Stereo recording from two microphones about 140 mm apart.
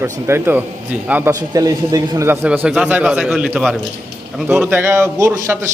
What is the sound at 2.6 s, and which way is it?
A man's voice, 5° right (ahead or behind).